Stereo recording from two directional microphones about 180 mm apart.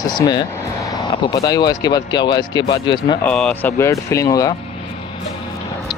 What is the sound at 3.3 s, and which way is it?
Speech, 5° left (ahead or behind).